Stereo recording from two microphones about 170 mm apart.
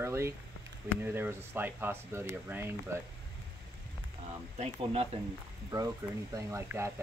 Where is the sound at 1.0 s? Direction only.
15° right (ahead or behind).